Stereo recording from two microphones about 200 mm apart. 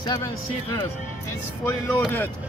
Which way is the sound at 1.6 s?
10° left (ahead or behind).